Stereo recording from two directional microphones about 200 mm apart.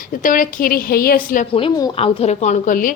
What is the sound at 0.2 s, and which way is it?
A woman's voice, 40° left (ahead or behind).